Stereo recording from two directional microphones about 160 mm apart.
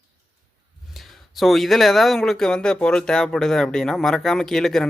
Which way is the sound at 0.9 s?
Centre (ahead or behind).